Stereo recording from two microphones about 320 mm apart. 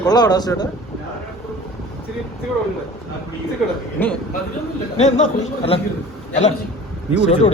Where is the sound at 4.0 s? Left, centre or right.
Centre.